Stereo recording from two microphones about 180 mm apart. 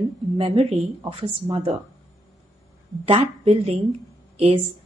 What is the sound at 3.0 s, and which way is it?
A woman's voice, 30° right (ahead or behind).